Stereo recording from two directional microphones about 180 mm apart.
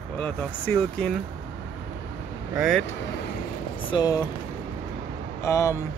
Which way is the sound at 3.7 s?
25° left (ahead or behind).